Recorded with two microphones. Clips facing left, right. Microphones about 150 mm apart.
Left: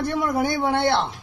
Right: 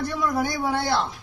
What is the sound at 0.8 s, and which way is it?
Speech, 65° left (ahead or behind).